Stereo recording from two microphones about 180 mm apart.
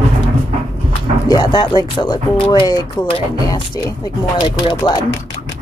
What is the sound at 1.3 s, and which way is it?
Speech, 20° left (ahead or behind).